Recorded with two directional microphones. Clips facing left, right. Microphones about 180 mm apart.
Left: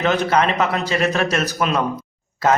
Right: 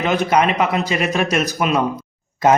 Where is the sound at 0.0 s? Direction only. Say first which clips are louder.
Right 1 dB; 10° right (ahead or behind).